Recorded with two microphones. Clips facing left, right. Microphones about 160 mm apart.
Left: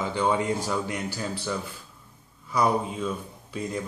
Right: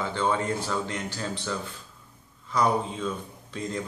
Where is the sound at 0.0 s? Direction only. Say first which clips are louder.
Left 2 dB; 15° left (ahead or behind).